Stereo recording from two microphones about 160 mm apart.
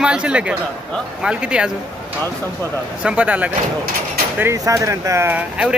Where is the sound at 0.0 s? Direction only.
5° right (ahead or behind).